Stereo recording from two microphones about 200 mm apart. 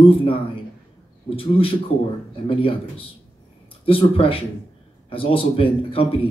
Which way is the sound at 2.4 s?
25° left (ahead or behind).